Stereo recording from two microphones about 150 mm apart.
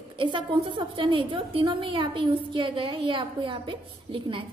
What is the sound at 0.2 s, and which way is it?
A woman's voice, 35° right (ahead or behind).